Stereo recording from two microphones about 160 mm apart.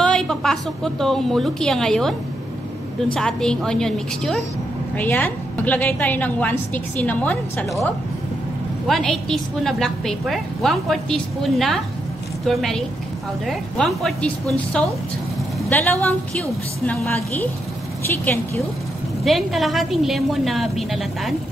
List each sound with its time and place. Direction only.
0.0 s a woman's voice: 5° left (ahead or behind)
3.2 s a woman's voice: 5° left (ahead or behind)
8.8 s a woman's voice: centre (ahead or behind)
19.2 s a woman's voice: centre (ahead or behind)